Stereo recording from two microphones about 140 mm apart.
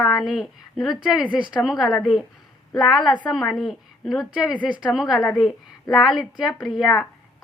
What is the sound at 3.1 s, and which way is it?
A woman's voice, 10° left (ahead or behind).